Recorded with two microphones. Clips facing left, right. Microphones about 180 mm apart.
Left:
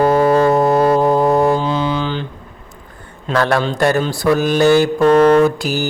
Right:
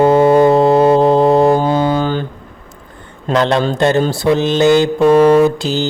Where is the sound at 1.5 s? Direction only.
45° right (ahead or behind).